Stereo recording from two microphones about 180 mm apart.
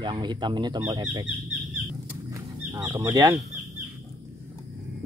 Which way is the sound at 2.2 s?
20° right (ahead or behind).